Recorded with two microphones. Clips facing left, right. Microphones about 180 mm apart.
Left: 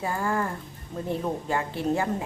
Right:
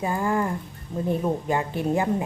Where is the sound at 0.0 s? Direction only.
15° right (ahead or behind).